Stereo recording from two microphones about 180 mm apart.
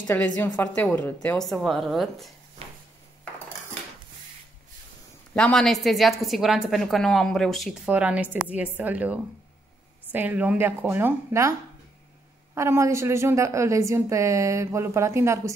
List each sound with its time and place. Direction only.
0.0 s a woman's voice: 10° left (ahead or behind)
2.6 s a sound: 35° right (ahead or behind)
5.3 s a woman's voice: 5° left (ahead or behind); by 11.5 s 15° right (ahead or behind)
12.5 s a woman's voice: 15° right (ahead or behind)